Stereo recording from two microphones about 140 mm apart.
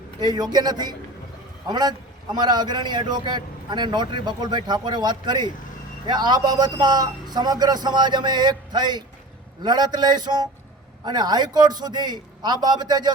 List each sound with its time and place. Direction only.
0.2 s a man's voice: 30° right (ahead or behind)